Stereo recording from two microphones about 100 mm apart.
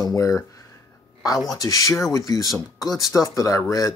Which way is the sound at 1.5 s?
35° left (ahead or behind).